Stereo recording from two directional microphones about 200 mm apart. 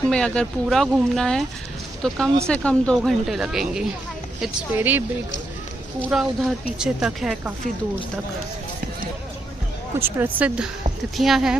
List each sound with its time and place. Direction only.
0.1 s a woman's voice: 5° left (ahead or behind)
10.0 s a woman's voice: 10° right (ahead or behind)